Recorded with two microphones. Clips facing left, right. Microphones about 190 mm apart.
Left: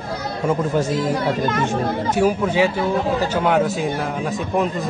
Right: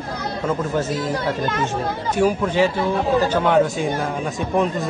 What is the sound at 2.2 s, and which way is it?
Speech, 10° left (ahead or behind).